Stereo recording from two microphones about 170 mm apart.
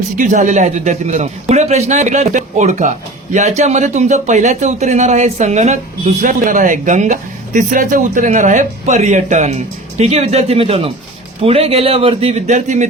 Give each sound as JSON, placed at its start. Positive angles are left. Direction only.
{"t": 0.2, "sound": "a man's voice", "side_deg": -50}